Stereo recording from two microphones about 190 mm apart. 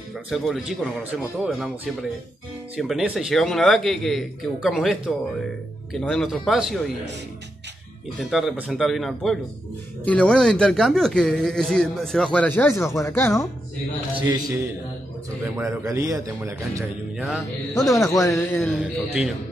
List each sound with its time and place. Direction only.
0.3 s speech: centre (ahead or behind)
5.9 s speech: centre (ahead or behind)
8.2 s speech: centre (ahead or behind)
14.1 s a man's voice: 20° right (ahead or behind)
15.6 s a man's voice: 15° right (ahead or behind)
17.7 s speech: 15° left (ahead or behind)